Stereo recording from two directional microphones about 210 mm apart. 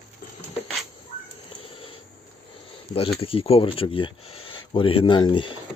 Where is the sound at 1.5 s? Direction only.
25° left (ahead or behind).